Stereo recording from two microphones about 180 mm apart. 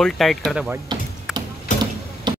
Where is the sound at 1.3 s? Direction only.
5° right (ahead or behind).